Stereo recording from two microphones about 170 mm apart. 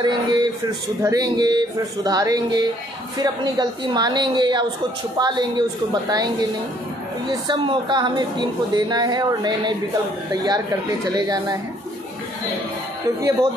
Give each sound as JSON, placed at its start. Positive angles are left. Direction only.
{"t": 0.0, "sound": "a woman's voice", "side_deg": -25}